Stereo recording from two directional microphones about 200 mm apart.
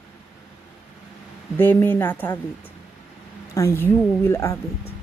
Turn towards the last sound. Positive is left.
turn(degrees=15)  # may be behind; listen again after turning